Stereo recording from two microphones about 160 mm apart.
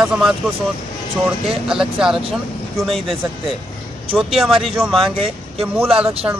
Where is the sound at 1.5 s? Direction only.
5° right (ahead or behind).